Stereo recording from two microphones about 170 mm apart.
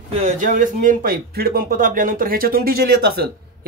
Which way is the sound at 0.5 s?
50° right (ahead or behind).